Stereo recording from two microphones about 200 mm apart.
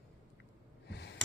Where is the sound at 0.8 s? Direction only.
55° left (ahead or behind).